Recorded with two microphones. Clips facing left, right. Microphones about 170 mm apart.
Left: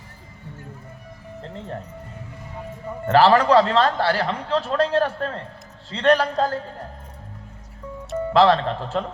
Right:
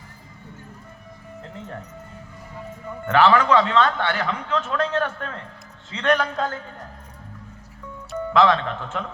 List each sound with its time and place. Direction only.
1.4 s music: 30° left (ahead or behind)
3.1 s a man's voice: 35° left (ahead or behind)
8.3 s a man's voice: 35° left (ahead or behind)